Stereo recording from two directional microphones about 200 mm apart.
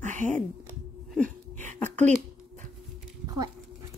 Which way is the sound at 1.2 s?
5° left (ahead or behind).